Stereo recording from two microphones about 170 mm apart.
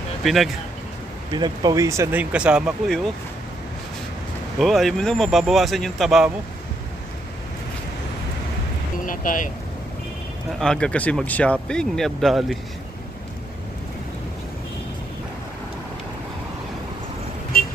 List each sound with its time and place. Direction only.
0.2 s speech: centre (ahead or behind)
1.3 s speech: 25° right (ahead or behind); by 3.0 s 5° right (ahead or behind)
4.6 s speech: centre (ahead or behind)
9.0 s speech: 50° left (ahead or behind)
10.6 s speech: 5° left (ahead or behind)
17.5 s vehicle: 60° left (ahead or behind)